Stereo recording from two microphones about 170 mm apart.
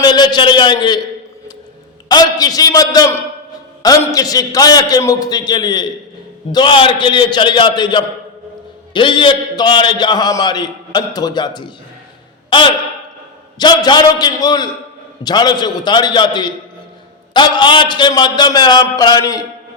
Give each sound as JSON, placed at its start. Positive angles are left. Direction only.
{"t": 0.0, "sound": "a man's voice", "side_deg": 25}
{"t": 2.0, "sound": "a man's voice", "side_deg": 25}
{"t": 13.6, "sound": "a man's voice", "side_deg": 25}